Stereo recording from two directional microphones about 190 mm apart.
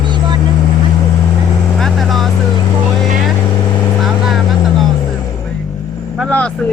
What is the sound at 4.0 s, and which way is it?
Vehicle, centre (ahead or behind).